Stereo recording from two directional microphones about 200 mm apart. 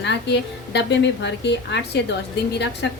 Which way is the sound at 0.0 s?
60° left (ahead or behind).